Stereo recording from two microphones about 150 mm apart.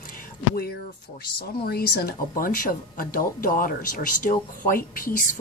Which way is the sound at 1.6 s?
90° left.